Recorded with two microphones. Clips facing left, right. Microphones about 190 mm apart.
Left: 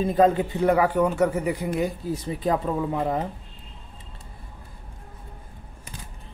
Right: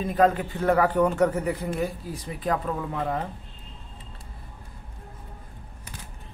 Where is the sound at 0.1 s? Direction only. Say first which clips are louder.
Left 1 dB; 25° left (ahead or behind).